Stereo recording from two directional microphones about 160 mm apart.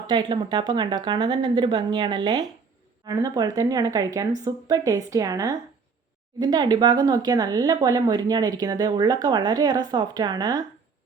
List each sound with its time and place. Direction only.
0.1 s speech: 30° right (ahead or behind)